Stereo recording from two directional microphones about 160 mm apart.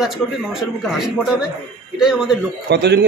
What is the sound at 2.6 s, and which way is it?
Speech, 90° right.